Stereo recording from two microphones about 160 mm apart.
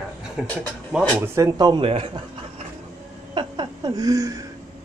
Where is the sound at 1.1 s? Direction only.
20° right (ahead or behind); by 2.6 s 35° right (ahead or behind).